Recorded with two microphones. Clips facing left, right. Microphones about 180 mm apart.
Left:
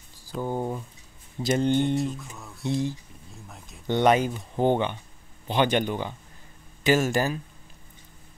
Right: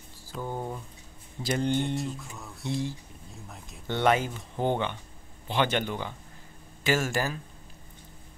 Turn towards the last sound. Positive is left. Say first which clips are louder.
# left 5 dB
turn(degrees=20)  # may be behind; listen again after turning